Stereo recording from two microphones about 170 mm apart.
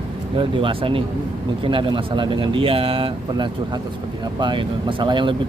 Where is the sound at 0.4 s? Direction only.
30° right (ahead or behind).